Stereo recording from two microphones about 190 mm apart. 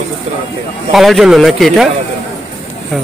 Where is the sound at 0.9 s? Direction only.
Centre (ahead or behind).